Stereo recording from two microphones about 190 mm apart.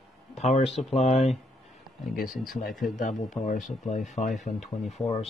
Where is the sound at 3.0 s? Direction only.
45° left (ahead or behind).